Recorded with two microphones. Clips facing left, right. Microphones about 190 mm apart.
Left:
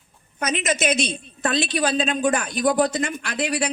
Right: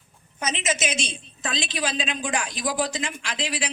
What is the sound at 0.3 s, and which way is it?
A man's voice, 60° left (ahead or behind).